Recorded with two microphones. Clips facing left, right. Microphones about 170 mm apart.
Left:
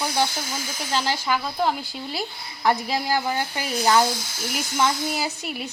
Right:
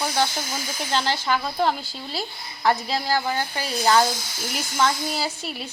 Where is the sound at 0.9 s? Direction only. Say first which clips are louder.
Even; 10° left (ahead or behind).